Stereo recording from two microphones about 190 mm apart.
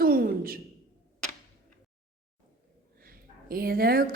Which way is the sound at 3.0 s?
50° right (ahead or behind).